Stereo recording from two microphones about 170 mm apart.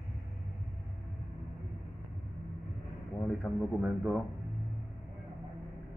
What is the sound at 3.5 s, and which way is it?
Speech, 10° left (ahead or behind).